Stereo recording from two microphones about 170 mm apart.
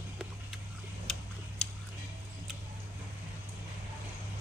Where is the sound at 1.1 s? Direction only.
5° left (ahead or behind).